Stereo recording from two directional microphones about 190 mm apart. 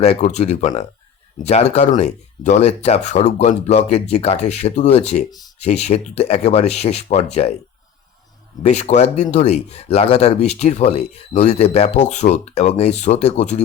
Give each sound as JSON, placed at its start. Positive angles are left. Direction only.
{"t": 0.0, "sound": "speech", "side_deg": 35}
{"t": 5.3, "sound": "speech", "side_deg": 20}
{"t": 5.5, "sound": "speech", "side_deg": 35}
{"t": 8.6, "sound": "speech", "side_deg": 35}